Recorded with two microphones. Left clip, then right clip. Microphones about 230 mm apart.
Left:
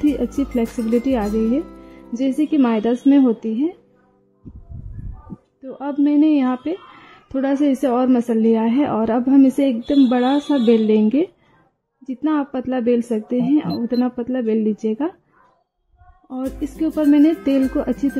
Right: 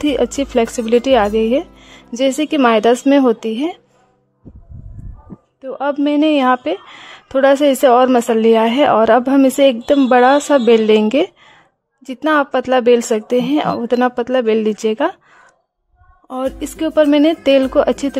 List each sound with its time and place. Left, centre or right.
0.0 s a woman's voice: right
5.6 s a woman's voice: right
16.3 s a woman's voice: right